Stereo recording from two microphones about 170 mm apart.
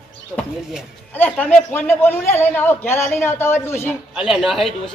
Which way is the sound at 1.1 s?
10° left (ahead or behind).